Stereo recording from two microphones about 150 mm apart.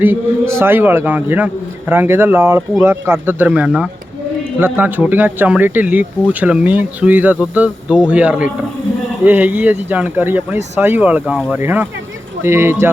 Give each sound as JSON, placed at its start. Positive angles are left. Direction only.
{"t": 0.0, "sound": "speech", "side_deg": -15}